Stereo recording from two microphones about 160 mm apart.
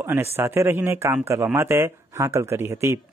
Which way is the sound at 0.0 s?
15° right (ahead or behind).